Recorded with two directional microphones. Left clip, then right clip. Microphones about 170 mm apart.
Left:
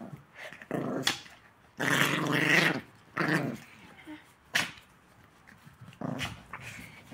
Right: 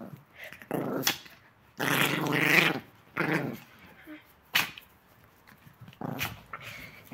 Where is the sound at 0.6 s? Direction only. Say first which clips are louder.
Right 2 dB; 25° right (ahead or behind).